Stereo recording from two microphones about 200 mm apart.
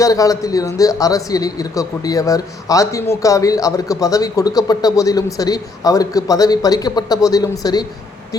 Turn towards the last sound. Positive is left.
turn(degrees=20)  # may be behind; listen again after turning